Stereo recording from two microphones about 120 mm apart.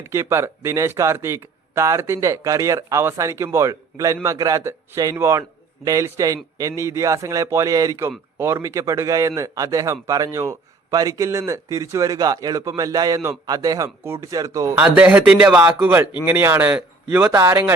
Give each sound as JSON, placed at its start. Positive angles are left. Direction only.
{"t": 0.0, "sound": "speech", "side_deg": -20}
{"t": 14.8, "sound": "speech", "side_deg": -10}